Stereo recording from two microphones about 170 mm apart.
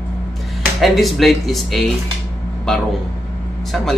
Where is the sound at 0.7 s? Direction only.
Centre (ahead or behind).